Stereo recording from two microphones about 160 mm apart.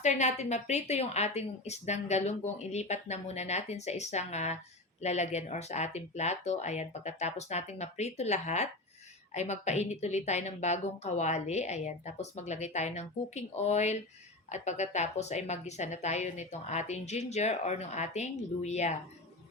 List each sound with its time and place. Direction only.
0.0 s a woman's voice: 45° left (ahead or behind)